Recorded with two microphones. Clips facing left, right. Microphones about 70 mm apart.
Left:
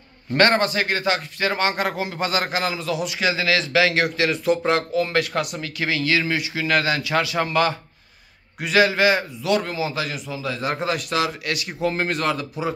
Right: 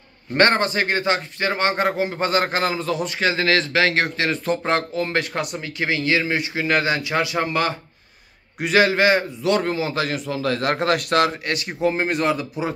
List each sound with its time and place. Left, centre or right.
0.3 s a man's voice: right
10.3 s a man's voice: right
11.4 s a man's voice: right